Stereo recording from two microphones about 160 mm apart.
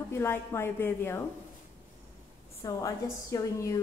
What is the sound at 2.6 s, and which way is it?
A woman's voice, 20° left (ahead or behind).